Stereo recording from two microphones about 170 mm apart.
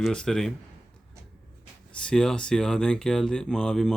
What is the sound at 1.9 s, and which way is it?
Speech, 5° left (ahead or behind).